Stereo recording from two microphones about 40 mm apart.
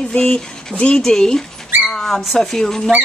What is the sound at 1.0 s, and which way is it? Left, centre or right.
A woman's voice, centre.